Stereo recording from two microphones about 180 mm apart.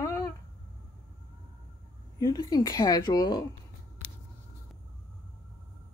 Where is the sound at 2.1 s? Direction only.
20° left (ahead or behind).